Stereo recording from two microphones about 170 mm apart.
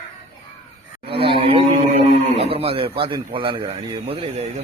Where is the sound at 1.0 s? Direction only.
35° right (ahead or behind).